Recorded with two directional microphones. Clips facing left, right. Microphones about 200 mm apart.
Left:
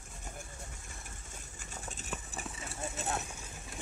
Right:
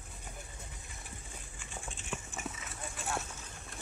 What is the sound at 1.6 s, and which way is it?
Clip-clop, 40° left (ahead or behind).